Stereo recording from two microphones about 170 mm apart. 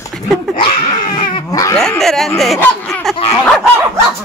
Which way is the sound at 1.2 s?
25° left (ahead or behind).